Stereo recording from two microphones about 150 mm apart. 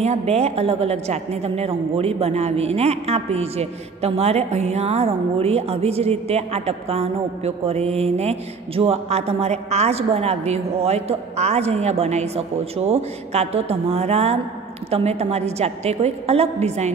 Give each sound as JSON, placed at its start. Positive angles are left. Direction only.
{"t": 0.0, "sound": "a woman's voice", "side_deg": -45}